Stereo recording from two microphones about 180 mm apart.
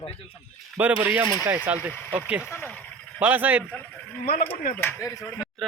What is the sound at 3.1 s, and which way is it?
Speech, 10° right (ahead or behind).